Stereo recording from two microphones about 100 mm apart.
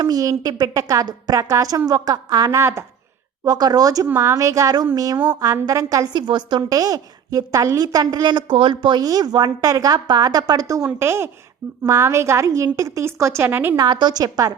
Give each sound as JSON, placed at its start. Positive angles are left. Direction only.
{"t": 0.0, "sound": "a woman's voice", "side_deg": -40}
{"t": 3.4, "sound": "a woman's voice", "side_deg": -40}
{"t": 6.2, "sound": "a woman's voice", "side_deg": -50}
{"t": 11.0, "sound": "a woman's voice", "side_deg": -25}
{"t": 13.7, "sound": "a woman's voice", "side_deg": -45}